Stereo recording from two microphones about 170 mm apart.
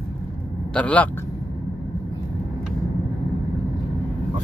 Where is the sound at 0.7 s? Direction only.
10° left (ahead or behind).